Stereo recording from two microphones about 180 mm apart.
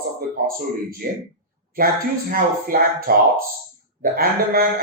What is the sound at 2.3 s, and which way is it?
Speech, 55° right (ahead or behind).